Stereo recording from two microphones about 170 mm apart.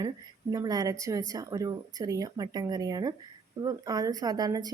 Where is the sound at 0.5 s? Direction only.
20° right (ahead or behind).